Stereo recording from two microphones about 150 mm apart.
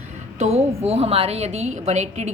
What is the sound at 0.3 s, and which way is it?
A woman's voice, 45° right (ahead or behind).